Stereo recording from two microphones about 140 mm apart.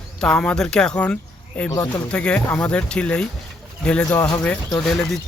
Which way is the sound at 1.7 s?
25° left (ahead or behind).